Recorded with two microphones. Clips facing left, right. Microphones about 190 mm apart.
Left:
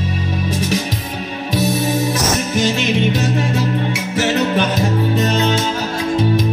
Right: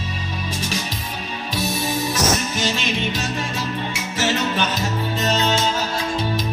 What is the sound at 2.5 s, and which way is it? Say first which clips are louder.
Music: left 7 dB; 55° left (ahead or behind).